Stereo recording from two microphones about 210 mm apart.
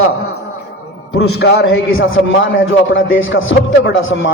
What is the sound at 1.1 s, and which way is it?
Speech, 50° left (ahead or behind).